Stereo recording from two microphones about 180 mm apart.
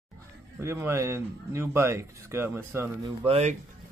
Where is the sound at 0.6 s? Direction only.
15° right (ahead or behind).